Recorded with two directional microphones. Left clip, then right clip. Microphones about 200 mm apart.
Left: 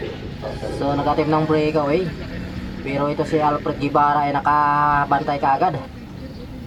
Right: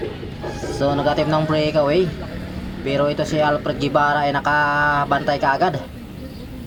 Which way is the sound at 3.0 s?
35° right (ahead or behind).